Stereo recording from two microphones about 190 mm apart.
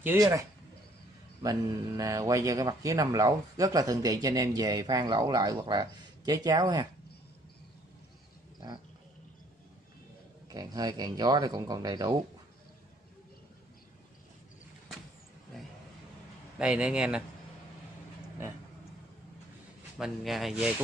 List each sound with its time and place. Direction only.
0.0 s speech: 10° right (ahead or behind)
10.5 s speech: 20° right (ahead or behind)
16.5 s a man's voice: 5° right (ahead or behind)
20.0 s a man's voice: centre (ahead or behind)